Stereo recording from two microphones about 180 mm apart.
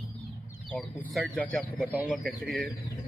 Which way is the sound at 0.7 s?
5° left (ahead or behind).